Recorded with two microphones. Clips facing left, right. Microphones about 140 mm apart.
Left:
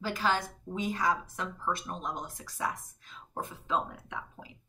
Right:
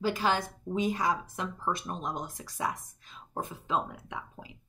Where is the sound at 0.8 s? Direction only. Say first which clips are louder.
Right 1 dB; 20° right (ahead or behind).